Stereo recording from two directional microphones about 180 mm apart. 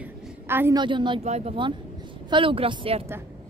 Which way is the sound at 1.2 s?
35° right (ahead or behind).